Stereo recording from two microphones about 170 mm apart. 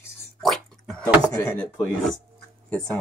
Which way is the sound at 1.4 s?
5° left (ahead or behind).